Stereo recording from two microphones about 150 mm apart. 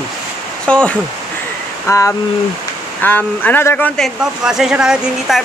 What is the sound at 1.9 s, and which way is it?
Speech, 20° left (ahead or behind).